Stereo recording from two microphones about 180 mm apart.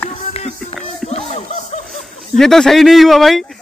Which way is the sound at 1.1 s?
35° left (ahead or behind).